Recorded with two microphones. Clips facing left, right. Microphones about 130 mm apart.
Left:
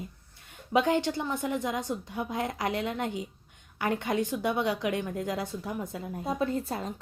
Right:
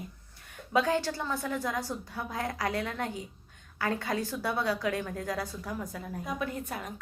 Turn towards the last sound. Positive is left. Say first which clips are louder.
# left 5 dB
turn(degrees=30)  # may be behind; listen again after turning